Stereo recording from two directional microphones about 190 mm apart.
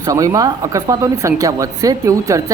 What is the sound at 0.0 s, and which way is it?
Speech, 15° right (ahead or behind).